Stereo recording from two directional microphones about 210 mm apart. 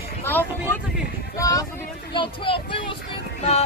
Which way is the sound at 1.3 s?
15° left (ahead or behind).